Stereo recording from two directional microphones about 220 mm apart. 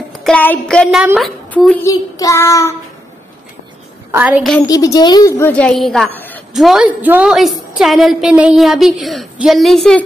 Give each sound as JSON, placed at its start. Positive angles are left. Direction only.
{"t": 0.1, "sound": "child singing", "side_deg": 5}
{"t": 1.1, "sound": "a woman's voice", "side_deg": 0}
{"t": 1.9, "sound": "a child's voice", "side_deg": 15}
{"t": 4.1, "sound": "a woman's voice", "side_deg": -5}
{"t": 4.6, "sound": "a child's voice", "side_deg": 15}
{"t": 5.5, "sound": "a woman's voice", "side_deg": 5}